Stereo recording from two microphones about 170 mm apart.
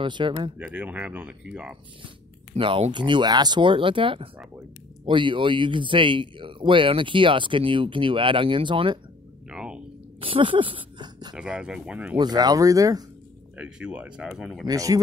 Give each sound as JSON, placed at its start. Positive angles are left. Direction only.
{"t": 0.0, "sound": "speech", "side_deg": -30}
{"t": 0.6, "sound": "speech", "side_deg": -10}
{"t": 2.5, "sound": "speech", "side_deg": -35}
{"t": 9.5, "sound": "a sound", "side_deg": -5}
{"t": 10.2, "sound": "speech", "side_deg": -30}
{"t": 11.3, "sound": "speech", "side_deg": -5}
{"t": 12.2, "sound": "speech", "side_deg": -25}
{"t": 13.6, "sound": "speech", "side_deg": -5}
{"t": 14.7, "sound": "speech", "side_deg": -20}